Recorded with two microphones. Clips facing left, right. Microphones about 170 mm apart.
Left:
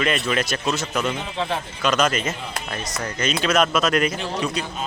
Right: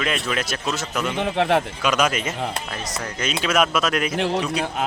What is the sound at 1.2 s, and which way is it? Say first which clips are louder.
Speech: right 7 dB; 70° right (ahead or behind).